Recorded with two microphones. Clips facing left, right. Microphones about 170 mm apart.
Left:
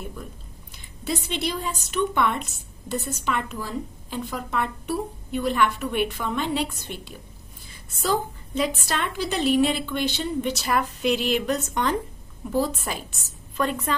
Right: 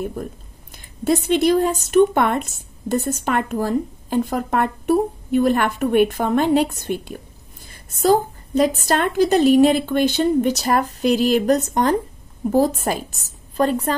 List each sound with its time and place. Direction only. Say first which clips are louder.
0.0 s speech: right 10 dB; 50° right (ahead or behind)